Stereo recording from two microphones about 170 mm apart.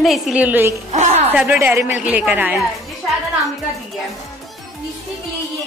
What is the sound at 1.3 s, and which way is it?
A woman's voice, 10° right (ahead or behind).